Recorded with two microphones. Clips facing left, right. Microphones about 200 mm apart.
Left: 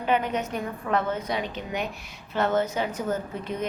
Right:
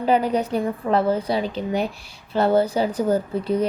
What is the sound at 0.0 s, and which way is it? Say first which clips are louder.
A woman's voice: right 6 dB; 35° right (ahead or behind).